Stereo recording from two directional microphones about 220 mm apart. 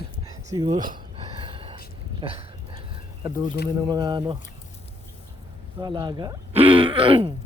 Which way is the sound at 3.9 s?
20° right (ahead or behind).